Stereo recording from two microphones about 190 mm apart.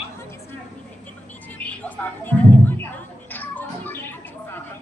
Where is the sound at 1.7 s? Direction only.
10° left (ahead or behind).